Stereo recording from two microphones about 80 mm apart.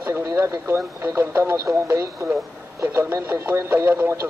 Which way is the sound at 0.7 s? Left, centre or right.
Right.